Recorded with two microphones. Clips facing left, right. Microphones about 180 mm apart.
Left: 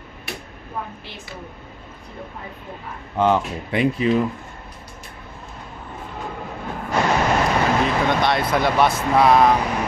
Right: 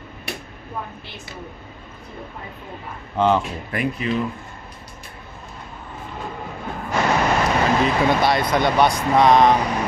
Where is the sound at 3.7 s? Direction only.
25° left (ahead or behind).